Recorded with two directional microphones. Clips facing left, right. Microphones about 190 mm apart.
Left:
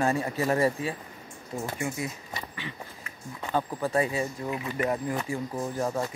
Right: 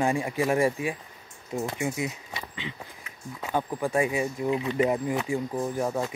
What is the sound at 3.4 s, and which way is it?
Speech, 10° right (ahead or behind).